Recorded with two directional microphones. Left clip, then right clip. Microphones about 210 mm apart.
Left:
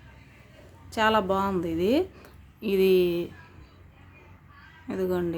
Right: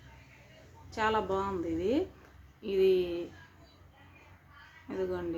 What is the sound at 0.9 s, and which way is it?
Speech, 50° left (ahead or behind).